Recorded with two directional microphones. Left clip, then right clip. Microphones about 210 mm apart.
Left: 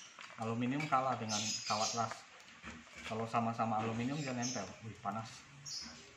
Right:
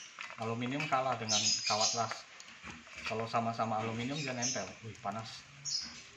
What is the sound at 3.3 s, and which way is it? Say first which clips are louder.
Speech: right 1 dB; 15° right (ahead or behind).